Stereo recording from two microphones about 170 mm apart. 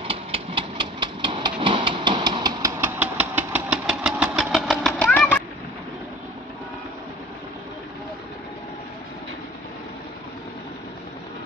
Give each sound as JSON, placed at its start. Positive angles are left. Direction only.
{"t": 0.0, "sound": "engine", "side_deg": -30}
{"t": 3.0, "sound": "engine", "side_deg": -10}
{"t": 4.6, "sound": "a sound", "side_deg": 5}